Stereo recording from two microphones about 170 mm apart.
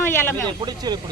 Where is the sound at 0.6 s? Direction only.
25° right (ahead or behind).